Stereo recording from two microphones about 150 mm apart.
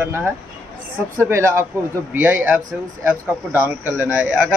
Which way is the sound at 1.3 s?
15° right (ahead or behind).